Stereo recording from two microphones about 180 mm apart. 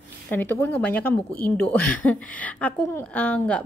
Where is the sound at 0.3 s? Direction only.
10° left (ahead or behind).